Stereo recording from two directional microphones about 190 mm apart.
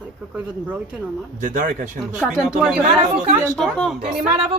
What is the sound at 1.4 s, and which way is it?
Speech, 45° right (ahead or behind).